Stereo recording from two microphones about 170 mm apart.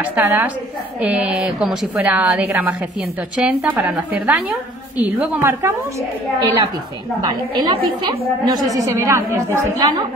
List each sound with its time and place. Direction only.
0.0 s a woman's voice: 15° right (ahead or behind)
8.7 s a woman's voice: 15° right (ahead or behind)